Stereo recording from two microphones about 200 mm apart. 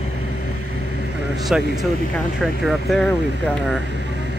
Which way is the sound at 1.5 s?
5° right (ahead or behind).